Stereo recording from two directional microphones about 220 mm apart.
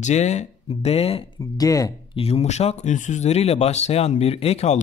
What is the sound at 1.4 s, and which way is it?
Speech, 15° left (ahead or behind).